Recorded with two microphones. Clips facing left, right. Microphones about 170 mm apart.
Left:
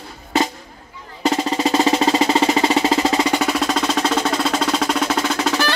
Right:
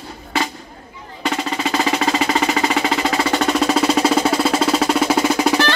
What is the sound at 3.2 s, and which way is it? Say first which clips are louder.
Music: even; 15° left (ahead or behind).